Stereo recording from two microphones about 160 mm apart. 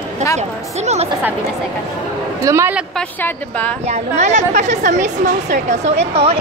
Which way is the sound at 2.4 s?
15° right (ahead or behind).